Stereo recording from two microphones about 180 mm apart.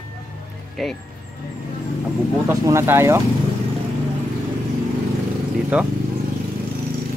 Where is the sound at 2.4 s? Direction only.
15° right (ahead or behind).